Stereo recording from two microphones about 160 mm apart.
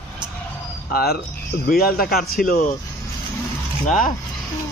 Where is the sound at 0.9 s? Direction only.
80° left; by 2.5 s 60° left (ahead or behind).